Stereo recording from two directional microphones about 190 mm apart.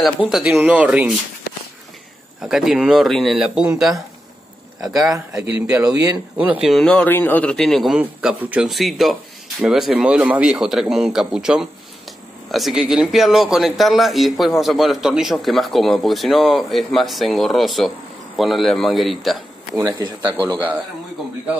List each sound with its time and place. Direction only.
0.0 s a man's voice: centre (ahead or behind)
2.4 s a man's voice: 5° right (ahead or behind)
4.8 s a man's voice: 20° right (ahead or behind); by 19.8 s centre (ahead or behind)
19.8 s speech: 25° right (ahead or behind)